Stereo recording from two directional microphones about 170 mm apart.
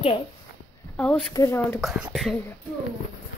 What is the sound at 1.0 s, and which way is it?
Speech, 5° left (ahead or behind).